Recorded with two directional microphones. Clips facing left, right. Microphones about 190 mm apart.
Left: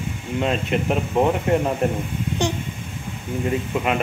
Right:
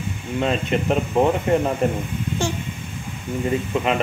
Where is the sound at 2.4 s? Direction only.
20° left (ahead or behind).